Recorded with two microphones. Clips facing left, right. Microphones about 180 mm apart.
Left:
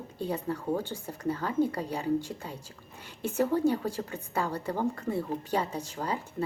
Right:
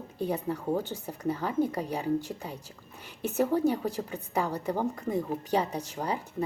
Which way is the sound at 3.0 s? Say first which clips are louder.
Right 1 dB; 10° right (ahead or behind).